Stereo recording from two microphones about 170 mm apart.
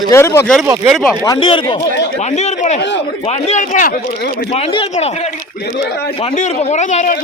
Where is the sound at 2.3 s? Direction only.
45° left (ahead or behind).